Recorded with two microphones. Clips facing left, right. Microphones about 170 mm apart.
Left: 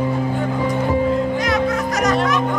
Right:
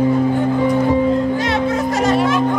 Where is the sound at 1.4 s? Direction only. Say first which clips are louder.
Right 1 dB; 30° right (ahead or behind).